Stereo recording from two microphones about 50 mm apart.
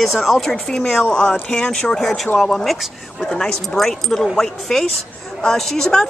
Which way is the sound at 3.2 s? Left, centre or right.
Centre.